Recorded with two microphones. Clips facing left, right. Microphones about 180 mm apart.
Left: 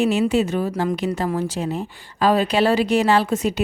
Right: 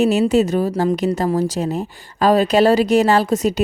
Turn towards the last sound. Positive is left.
turn(degrees=-40)  # may be behind; listen again after turning